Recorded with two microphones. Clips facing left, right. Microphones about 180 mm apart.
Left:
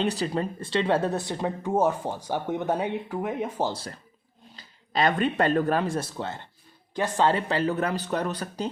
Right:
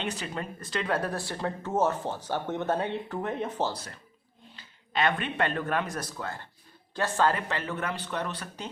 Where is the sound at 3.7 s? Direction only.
35° left (ahead or behind); by 7.3 s 15° left (ahead or behind).